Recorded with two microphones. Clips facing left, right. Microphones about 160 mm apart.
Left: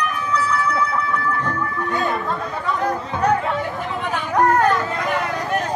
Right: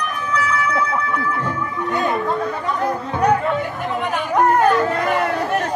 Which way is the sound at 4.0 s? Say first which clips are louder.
Right 1 dB; 10° right (ahead or behind).